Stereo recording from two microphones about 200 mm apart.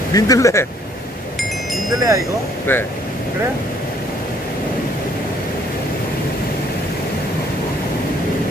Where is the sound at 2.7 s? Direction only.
10° left (ahead or behind).